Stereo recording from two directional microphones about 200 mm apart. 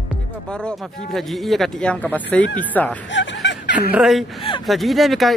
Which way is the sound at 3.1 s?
65° left (ahead or behind).